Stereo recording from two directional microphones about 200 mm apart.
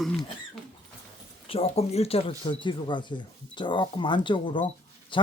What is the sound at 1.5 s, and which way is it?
Speech, 30° left (ahead or behind).